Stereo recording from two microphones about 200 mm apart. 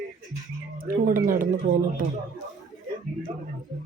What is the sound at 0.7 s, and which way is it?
Speech, 45° right (ahead or behind).